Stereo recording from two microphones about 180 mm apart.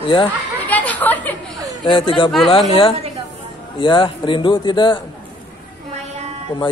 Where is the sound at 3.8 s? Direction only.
25° left (ahead or behind).